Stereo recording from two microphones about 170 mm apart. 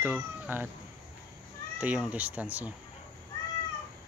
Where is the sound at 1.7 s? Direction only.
10° right (ahead or behind).